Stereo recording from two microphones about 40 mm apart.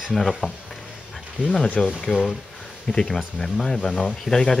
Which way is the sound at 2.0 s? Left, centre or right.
Left.